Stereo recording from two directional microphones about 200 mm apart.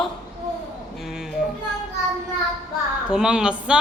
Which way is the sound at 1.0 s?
Centre (ahead or behind).